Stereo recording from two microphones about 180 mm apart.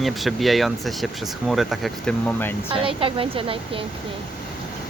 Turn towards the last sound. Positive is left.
turn(degrees=-30)  # may be behind; listen again after turning